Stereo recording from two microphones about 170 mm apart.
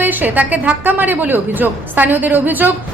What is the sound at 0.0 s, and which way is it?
A woman's voice, 10° right (ahead or behind).